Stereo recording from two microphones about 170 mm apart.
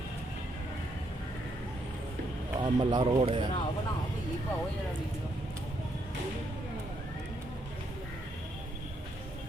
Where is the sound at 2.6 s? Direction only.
25° right (ahead or behind).